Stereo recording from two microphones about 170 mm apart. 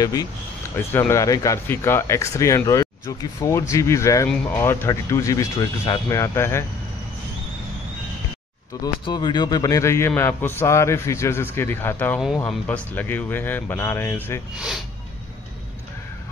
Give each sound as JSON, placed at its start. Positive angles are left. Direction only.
{"t": 0.0, "sound": "a man's voice", "side_deg": 20}
{"t": 8.8, "sound": "a man's voice", "side_deg": 25}